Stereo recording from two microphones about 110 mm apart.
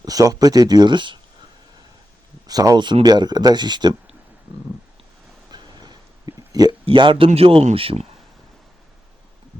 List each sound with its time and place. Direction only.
0.0 s speech: 35° right (ahead or behind)
2.5 s speech: 35° right (ahead or behind)
5.5 s a sound: 40° right (ahead or behind)
6.8 s a man's voice: 50° right (ahead or behind)
7.3 s speech: 60° right (ahead or behind)